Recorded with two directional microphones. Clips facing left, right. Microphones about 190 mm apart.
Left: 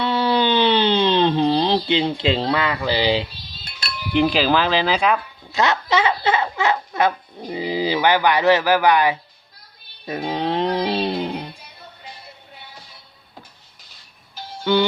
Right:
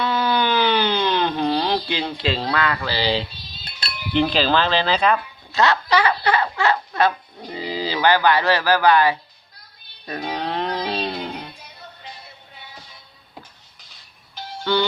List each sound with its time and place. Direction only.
0.0 s a sound: 30° left (ahead or behind)
4.1 s speech: 10° left (ahead or behind)
10.1 s music: 20° left (ahead or behind)
14.6 s music: 10° left (ahead or behind)